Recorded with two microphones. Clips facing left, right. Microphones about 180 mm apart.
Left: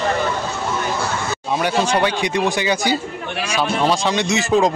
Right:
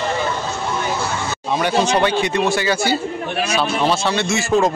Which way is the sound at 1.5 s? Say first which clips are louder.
Right 1 dB; 10° left (ahead or behind).